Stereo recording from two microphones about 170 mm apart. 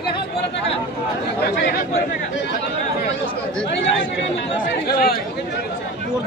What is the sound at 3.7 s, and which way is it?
Speech, 90° left.